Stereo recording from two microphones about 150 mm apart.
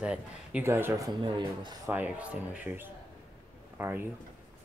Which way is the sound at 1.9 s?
10° right (ahead or behind).